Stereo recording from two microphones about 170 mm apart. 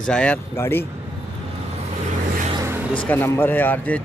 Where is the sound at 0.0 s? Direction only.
5° left (ahead or behind).